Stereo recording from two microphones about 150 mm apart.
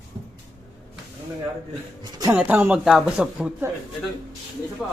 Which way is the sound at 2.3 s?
10° right (ahead or behind).